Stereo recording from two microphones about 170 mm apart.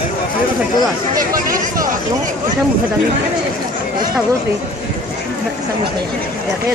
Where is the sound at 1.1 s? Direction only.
55° right (ahead or behind).